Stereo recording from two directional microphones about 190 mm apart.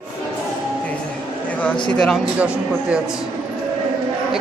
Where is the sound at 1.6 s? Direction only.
5° left (ahead or behind).